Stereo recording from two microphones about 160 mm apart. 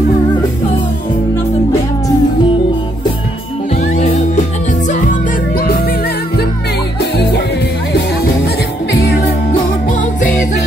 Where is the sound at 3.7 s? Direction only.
45° left (ahead or behind).